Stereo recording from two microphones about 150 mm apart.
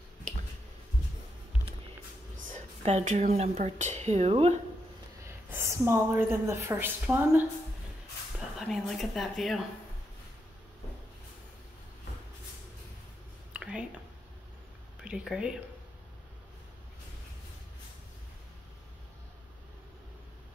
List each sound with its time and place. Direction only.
2.5 s speech: 45° right (ahead or behind)
5.2 s a woman's voice: 20° right (ahead or behind)
8.5 s speech: 5° left (ahead or behind)
13.5 s a sound: 5° right (ahead or behind)
15.0 s speech: 5° right (ahead or behind)